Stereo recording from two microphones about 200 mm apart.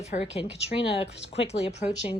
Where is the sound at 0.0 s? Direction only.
35° left (ahead or behind).